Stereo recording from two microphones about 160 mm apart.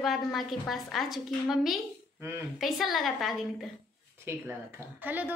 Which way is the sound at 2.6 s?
Centre (ahead or behind).